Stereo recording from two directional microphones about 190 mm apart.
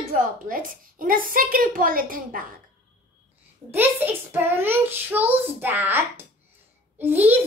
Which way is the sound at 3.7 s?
10° right (ahead or behind).